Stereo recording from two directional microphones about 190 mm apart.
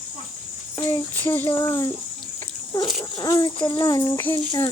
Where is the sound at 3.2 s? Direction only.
20° left (ahead or behind).